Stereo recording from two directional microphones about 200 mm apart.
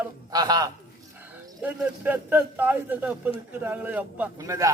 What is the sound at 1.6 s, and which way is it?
A man's voice, 10° right (ahead or behind).